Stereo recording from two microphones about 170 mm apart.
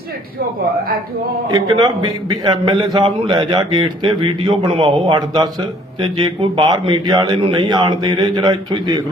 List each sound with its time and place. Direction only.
1.5 s a man's voice: 20° right (ahead or behind)